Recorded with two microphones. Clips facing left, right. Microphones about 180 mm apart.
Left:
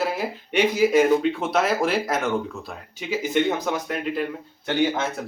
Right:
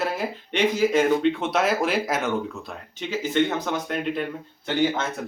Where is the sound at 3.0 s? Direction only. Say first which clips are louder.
Even; 10° left (ahead or behind).